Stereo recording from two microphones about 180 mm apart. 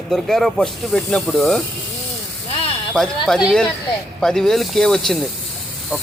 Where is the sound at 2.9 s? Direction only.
Centre (ahead or behind).